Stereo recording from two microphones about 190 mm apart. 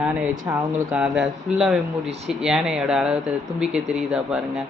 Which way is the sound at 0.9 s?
5° right (ahead or behind).